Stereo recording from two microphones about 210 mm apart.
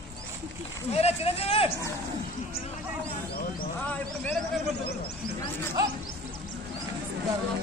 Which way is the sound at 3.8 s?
5° left (ahead or behind).